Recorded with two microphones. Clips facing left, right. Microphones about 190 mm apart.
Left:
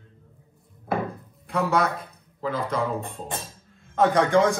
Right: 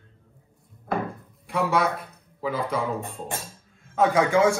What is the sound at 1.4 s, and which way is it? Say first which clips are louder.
Speech: even; centre (ahead or behind).